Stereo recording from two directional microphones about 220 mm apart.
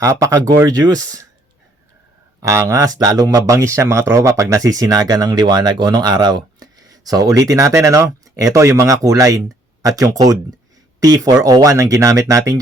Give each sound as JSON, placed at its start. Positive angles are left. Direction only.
{"t": 0.0, "sound": "speech", "side_deg": -15}
{"t": 2.4, "sound": "speech", "side_deg": -15}